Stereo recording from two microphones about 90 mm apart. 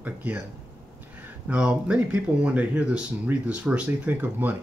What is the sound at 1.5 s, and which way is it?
Speech, 10° right (ahead or behind).